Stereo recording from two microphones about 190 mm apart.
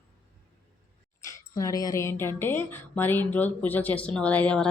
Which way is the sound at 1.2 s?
15° left (ahead or behind).